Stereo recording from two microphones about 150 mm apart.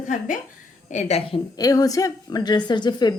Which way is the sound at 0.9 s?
50° left (ahead or behind).